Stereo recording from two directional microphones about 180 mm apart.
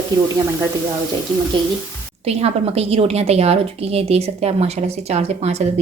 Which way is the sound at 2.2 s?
35° right (ahead or behind).